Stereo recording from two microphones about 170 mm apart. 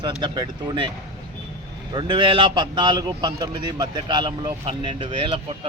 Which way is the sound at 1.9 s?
30° right (ahead or behind).